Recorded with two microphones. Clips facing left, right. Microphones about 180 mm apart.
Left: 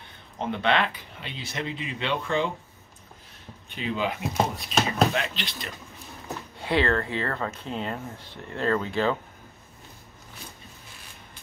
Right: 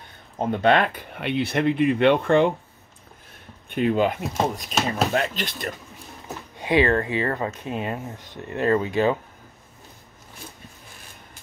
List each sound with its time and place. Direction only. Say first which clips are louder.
0.4 s speech: right 5 dB; 45° right (ahead or behind); by 2.5 s 60° right (ahead or behind)
3.7 s speech: right 8 dB; 50° right (ahead or behind)
6.5 s speech: right 5 dB; 15° right (ahead or behind)